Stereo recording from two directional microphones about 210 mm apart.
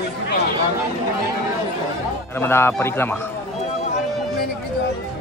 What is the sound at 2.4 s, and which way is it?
Speech, 10° left (ahead or behind).